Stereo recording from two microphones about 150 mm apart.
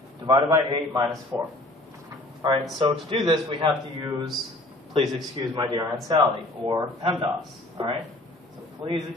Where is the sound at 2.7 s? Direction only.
30° right (ahead or behind).